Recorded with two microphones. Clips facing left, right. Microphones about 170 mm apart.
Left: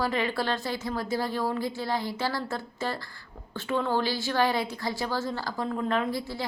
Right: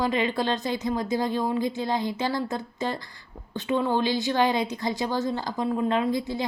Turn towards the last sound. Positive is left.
turn(degrees=-20)  # may be behind; listen again after turning